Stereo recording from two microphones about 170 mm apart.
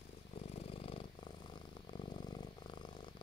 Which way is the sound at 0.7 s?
35° left (ahead or behind).